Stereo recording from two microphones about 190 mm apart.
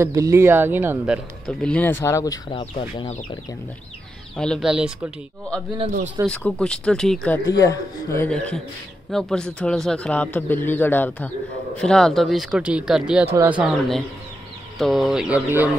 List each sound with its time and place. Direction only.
0.0 s a man's voice: 15° right (ahead or behind); by 2.6 s 20° left (ahead or behind)
2.6 s speech: 30° left (ahead or behind)
4.4 s a man's voice: centre (ahead or behind)
6.3 s a man's voice: 5° left (ahead or behind)
7.4 s a man's voice: 15° left (ahead or behind); by 15.7 s 5° right (ahead or behind)